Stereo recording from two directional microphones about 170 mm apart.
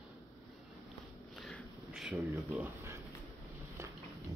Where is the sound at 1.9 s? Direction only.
5° right (ahead or behind).